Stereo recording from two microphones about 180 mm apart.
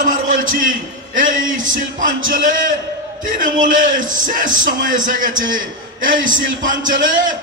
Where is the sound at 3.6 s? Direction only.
50° right (ahead or behind).